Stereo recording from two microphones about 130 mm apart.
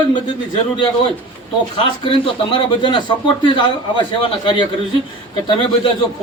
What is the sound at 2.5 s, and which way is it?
Speech, 40° left (ahead or behind).